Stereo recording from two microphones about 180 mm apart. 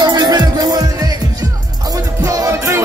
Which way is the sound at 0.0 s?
25° right (ahead or behind).